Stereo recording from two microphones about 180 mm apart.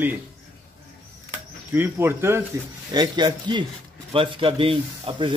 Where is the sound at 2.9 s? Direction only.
25° right (ahead or behind).